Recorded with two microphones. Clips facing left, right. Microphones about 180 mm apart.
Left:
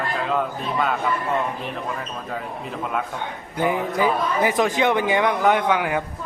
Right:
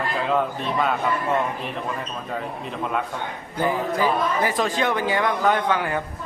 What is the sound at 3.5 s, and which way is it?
A man's voice, 15° left (ahead or behind).